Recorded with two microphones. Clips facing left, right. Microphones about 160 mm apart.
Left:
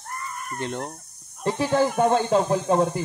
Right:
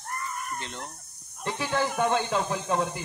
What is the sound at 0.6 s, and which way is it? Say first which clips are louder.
Speech: left 9 dB; 50° left (ahead or behind).